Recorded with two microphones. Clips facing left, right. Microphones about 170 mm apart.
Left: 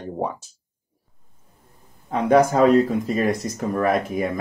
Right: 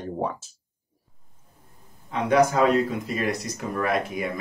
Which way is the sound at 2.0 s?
45° left (ahead or behind).